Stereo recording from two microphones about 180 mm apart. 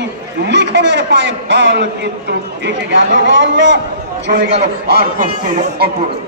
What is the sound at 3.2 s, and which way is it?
Speech, 85° right.